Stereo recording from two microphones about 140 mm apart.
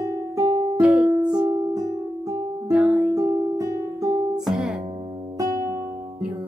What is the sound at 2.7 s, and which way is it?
Music, 5° right (ahead or behind).